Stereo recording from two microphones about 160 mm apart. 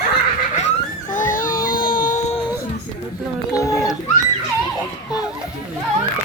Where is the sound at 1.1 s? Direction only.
55° left (ahead or behind).